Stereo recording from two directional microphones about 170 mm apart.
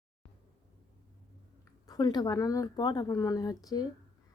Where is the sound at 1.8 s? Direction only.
25° left (ahead or behind).